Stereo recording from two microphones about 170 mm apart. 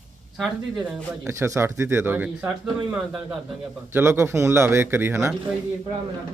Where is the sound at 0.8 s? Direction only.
15° right (ahead or behind).